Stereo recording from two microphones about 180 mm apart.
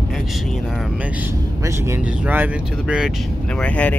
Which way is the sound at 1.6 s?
15° right (ahead or behind).